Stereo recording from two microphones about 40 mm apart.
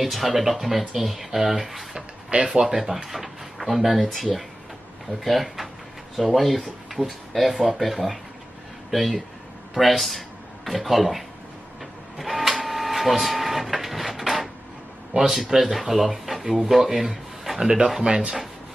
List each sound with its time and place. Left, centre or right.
0.0 s speech: centre
2.3 s speech: right; by 11.2 s centre
12.2 s printer: centre
15.1 s speech: centre
17.6 s speech: centre